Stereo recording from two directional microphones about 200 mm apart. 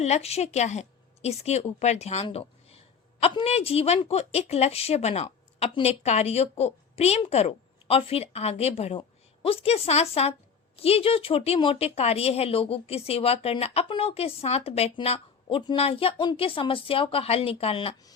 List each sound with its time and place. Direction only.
0.0 s a woman's voice: 30° left (ahead or behind)